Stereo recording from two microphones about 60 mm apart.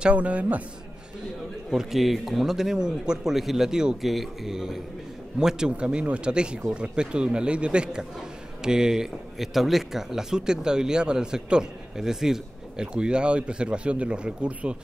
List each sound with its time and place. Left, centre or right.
0.0 s a man's voice: right
1.7 s speech: centre